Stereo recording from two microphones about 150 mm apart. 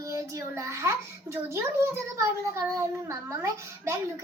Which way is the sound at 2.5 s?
20° right (ahead or behind).